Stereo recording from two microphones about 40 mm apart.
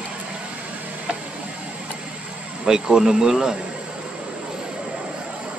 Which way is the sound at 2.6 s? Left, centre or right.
Centre.